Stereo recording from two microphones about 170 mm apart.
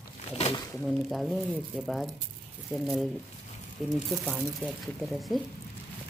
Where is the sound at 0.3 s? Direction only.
35° left (ahead or behind).